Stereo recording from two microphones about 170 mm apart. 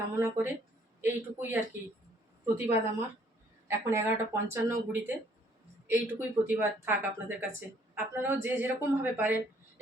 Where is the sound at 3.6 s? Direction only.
15° right (ahead or behind).